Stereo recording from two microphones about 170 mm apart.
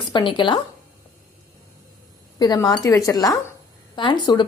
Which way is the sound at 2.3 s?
25° left (ahead or behind).